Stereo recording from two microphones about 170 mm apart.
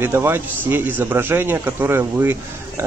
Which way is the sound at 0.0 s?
15° right (ahead or behind).